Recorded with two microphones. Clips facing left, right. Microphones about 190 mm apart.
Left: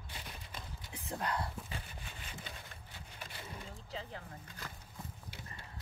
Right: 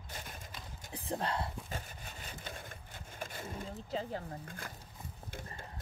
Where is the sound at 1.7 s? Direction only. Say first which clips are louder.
Right 3 dB; 40° right (ahead or behind).